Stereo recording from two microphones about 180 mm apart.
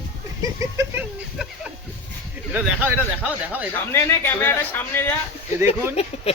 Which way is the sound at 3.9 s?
15° left (ahead or behind).